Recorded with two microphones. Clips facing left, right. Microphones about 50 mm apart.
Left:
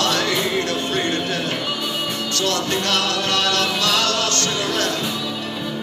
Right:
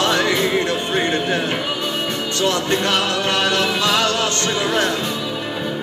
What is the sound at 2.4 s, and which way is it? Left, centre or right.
Music, right.